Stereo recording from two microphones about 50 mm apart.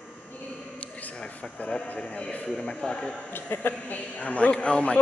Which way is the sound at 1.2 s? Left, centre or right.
Centre.